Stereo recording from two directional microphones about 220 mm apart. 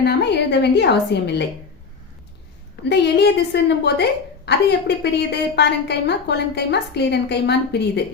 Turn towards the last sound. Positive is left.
turn(degrees=50)  # may be behind; listen again after turning